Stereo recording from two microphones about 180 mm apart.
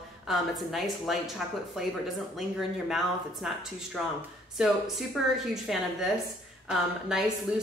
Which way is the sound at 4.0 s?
5° right (ahead or behind).